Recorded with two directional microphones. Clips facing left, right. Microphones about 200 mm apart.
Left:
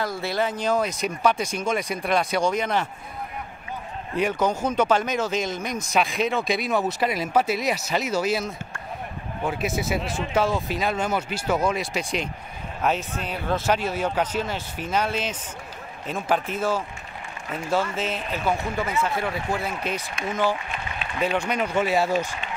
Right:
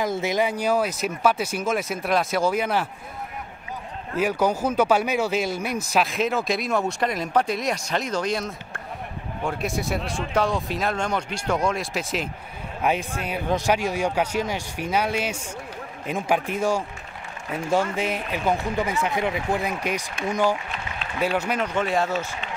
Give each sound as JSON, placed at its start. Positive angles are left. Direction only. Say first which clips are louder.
{"t": 0.0, "sound": "speech", "louder": "right 3 dB", "side_deg": -15}
{"t": 4.2, "sound": "speech", "louder": "right 1 dB", "side_deg": -5}
{"t": 21.5, "sound": "speech", "louder": "left 1 dB", "side_deg": 5}